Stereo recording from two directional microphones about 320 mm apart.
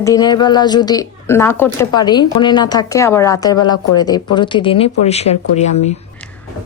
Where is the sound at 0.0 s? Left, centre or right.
Centre.